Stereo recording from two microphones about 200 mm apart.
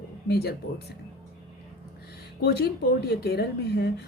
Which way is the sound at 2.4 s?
55° left (ahead or behind).